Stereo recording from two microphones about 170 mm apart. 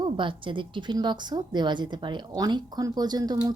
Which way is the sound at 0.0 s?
30° right (ahead or behind).